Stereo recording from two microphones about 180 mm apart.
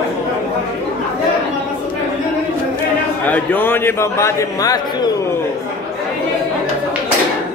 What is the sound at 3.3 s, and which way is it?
A man's voice, 10° left (ahead or behind).